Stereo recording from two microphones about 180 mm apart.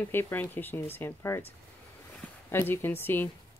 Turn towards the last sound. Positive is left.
turn(degrees=10)  # may be behind; listen again after turning